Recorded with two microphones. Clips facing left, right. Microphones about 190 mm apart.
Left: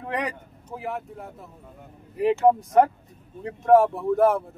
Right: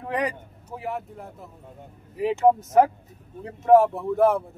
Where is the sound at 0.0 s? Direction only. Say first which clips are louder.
Right 2 dB; centre (ahead or behind).